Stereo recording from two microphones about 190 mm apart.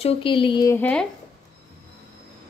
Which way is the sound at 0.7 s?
5° left (ahead or behind).